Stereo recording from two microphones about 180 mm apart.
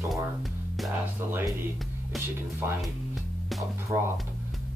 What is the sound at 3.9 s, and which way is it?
Speech, 15° right (ahead or behind).